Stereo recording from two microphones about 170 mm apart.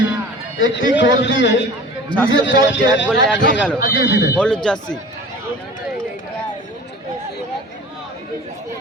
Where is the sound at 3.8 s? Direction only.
75° left (ahead or behind); by 4.3 s 90° left.